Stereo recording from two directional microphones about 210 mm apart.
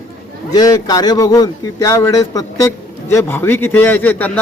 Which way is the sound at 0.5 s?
20° left (ahead or behind).